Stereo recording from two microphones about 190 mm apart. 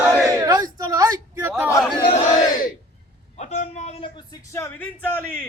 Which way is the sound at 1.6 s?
15° left (ahead or behind).